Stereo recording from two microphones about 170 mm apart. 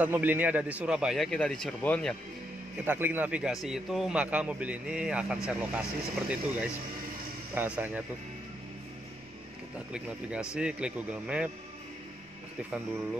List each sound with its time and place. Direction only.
0.0 s a man's voice: 10° right (ahead or behind); by 2.1 s 5° left (ahead or behind)
2.8 s speech: 10° right (ahead or behind)
9.9 s speech: 5° right (ahead or behind)